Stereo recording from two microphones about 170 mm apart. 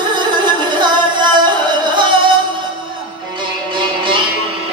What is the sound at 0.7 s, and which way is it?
Music, 25° right (ahead or behind).